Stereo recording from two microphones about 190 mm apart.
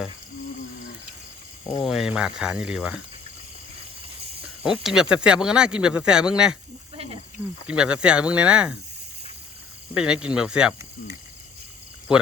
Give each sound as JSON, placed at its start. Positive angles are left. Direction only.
{"t": 1.8, "sound": "speech", "side_deg": 0}
{"t": 4.8, "sound": "speech", "side_deg": -5}
{"t": 6.9, "sound": "cricket", "side_deg": -30}
{"t": 7.7, "sound": "speech", "side_deg": -5}
{"t": 9.9, "sound": "speech", "side_deg": -5}
{"t": 12.1, "sound": "speech", "side_deg": -5}